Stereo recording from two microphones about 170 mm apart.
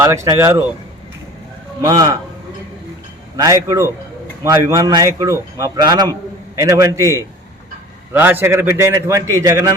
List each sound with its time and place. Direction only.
0.3 s a man's voice: 15° right (ahead or behind)
1.8 s a man's voice: 15° right (ahead or behind)
3.3 s a man's voice: 20° right (ahead or behind)